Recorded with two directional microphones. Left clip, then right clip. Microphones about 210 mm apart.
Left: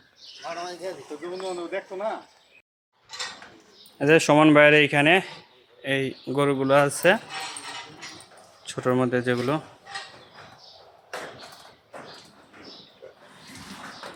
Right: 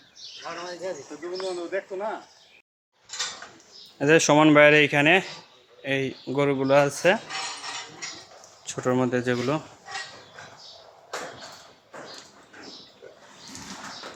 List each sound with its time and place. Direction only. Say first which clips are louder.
0.4 s speech: left 1 dB; 50° left (ahead or behind)
3.9 s speech: left 1 dB; 5° left (ahead or behind)
8.6 s speech: left 1 dB; 5° left (ahead or behind)